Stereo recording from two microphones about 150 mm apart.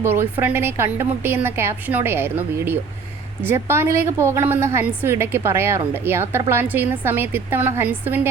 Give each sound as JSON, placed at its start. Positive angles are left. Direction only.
{"t": 0.0, "sound": "a woman's voice", "side_deg": -15}